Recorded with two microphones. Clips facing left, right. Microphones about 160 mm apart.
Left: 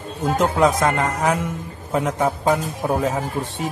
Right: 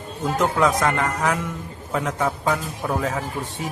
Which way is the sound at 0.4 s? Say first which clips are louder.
Left 2 dB; 20° left (ahead or behind).